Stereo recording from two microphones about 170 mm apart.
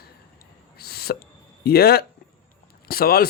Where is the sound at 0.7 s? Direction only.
65° left (ahead or behind).